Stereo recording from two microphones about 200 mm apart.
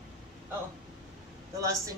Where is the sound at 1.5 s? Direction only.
15° right (ahead or behind).